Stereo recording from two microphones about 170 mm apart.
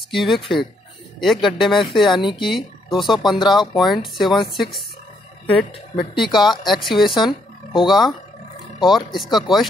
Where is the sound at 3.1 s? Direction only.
25° left (ahead or behind).